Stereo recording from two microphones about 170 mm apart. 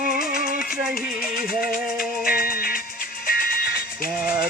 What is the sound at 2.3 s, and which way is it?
Music, 55° left (ahead or behind).